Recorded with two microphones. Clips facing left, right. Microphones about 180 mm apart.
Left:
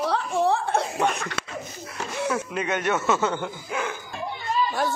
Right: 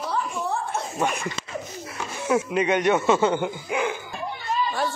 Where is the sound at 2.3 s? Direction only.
10° right (ahead or behind).